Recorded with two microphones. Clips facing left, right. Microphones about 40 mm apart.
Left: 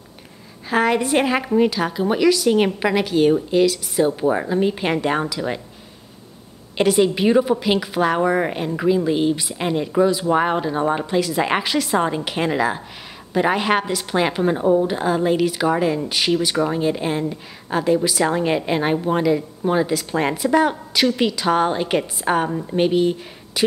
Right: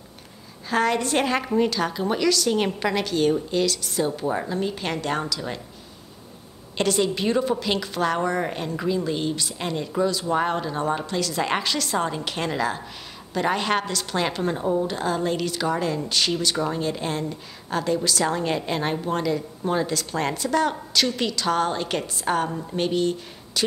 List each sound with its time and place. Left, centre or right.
0.7 s a woman's voice: centre
6.8 s a woman's voice: centre